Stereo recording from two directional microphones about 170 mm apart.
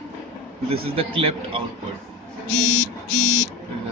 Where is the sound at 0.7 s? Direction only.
35° right (ahead or behind).